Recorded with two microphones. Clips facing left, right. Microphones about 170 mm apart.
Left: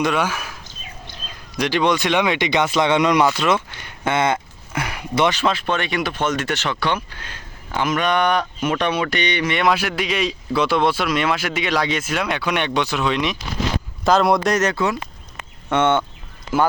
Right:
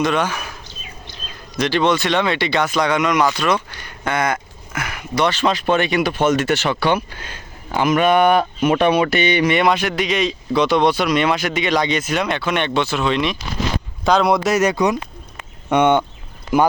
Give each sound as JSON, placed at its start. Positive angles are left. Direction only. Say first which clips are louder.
{"t": 0.0, "sound": "speech", "louder": "right 1 dB", "side_deg": 10}
{"t": 1.5, "sound": "speech", "louder": "right 2 dB", "side_deg": 15}
{"t": 5.3, "sound": "speech", "louder": "right 3 dB", "side_deg": 5}